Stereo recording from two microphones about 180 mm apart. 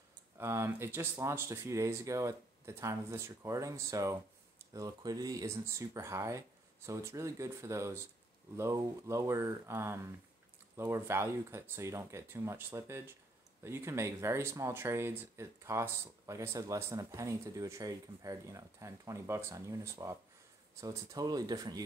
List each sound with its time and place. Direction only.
0.4 s speech: 15° right (ahead or behind)